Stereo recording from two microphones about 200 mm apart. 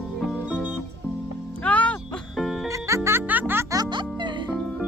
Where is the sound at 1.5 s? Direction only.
5° left (ahead or behind).